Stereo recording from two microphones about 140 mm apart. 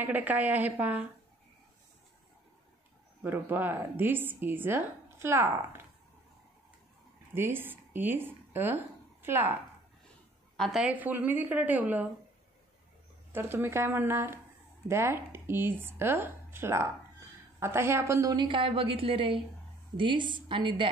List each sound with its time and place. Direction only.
0.0 s a woman's voice: 10° right (ahead or behind)
3.2 s a woman's voice: 15° right (ahead or behind)
7.3 s speech: 15° right (ahead or behind)
10.6 s a woman's voice: 5° right (ahead or behind)
13.3 s a woman's voice: 15° right (ahead or behind); by 20.9 s 35° right (ahead or behind)